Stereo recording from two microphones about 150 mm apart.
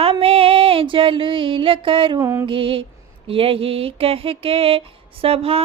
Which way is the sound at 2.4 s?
35° right (ahead or behind).